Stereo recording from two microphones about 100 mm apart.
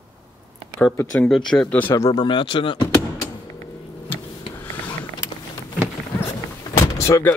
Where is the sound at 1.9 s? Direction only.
40° left (ahead or behind).